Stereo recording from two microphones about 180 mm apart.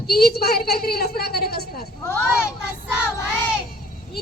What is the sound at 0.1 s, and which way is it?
A woman's voice, 60° left (ahead or behind).